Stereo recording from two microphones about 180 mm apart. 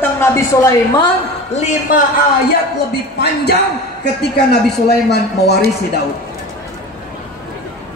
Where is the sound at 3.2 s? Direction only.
65° left (ahead or behind).